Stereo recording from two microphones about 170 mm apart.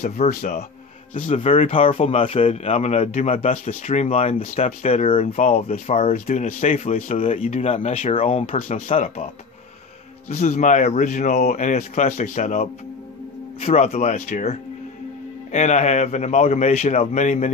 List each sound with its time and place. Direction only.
0.0 s speech: 50° left (ahead or behind)